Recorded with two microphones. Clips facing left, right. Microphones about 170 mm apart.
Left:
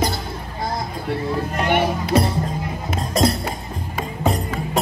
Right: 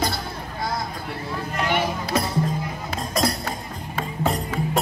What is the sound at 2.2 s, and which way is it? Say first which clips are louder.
Music: left 6 dB; 30° left (ahead or behind).